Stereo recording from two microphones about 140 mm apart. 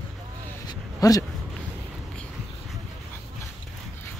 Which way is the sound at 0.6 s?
25° left (ahead or behind).